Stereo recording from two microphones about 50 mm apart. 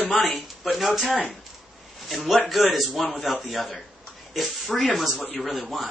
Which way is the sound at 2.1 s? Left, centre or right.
Centre.